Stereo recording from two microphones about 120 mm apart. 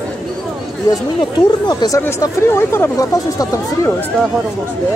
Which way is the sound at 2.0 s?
25° left (ahead or behind).